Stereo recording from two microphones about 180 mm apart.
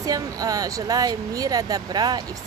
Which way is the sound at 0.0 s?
20° right (ahead or behind).